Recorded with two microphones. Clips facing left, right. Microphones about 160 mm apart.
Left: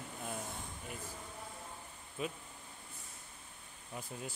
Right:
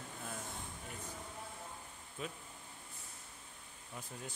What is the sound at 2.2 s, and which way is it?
Speech, 10° left (ahead or behind).